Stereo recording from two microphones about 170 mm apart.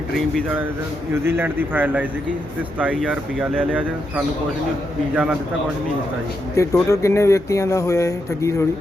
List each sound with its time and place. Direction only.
1.1 s speech: 15° right (ahead or behind)
3.6 s speech: 10° right (ahead or behind)
5.1 s speech: 10° right (ahead or behind)
6.6 s speech: 20° left (ahead or behind)